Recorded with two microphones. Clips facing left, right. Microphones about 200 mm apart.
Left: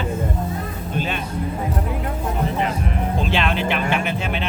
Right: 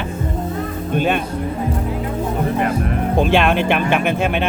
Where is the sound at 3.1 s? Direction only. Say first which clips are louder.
Right 8 dB; 55° right (ahead or behind).